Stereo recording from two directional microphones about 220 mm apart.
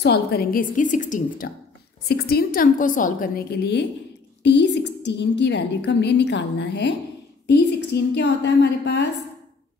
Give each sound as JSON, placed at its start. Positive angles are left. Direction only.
{"t": 0.0, "sound": "a woman's voice", "side_deg": 45}
{"t": 2.0, "sound": "a woman's voice", "side_deg": 45}